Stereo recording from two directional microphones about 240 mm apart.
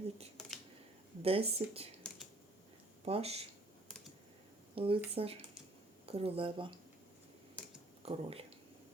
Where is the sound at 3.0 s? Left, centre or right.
Right.